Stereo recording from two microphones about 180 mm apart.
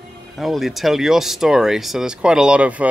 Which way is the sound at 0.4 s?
Centre (ahead or behind).